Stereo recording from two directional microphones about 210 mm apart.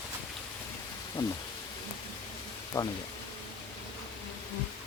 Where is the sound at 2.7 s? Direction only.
15° left (ahead or behind).